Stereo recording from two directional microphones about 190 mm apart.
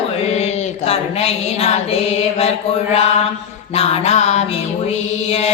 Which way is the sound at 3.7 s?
30° left (ahead or behind).